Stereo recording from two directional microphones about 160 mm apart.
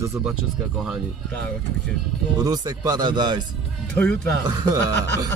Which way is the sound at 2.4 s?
25° right (ahead or behind).